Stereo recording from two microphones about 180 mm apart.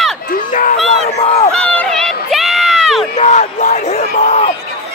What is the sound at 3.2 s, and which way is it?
Crowd, 40° left (ahead or behind).